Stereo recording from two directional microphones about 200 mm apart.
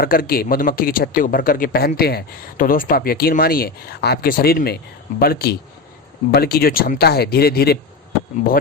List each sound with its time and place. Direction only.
0.0 s speech: 45° left (ahead or behind)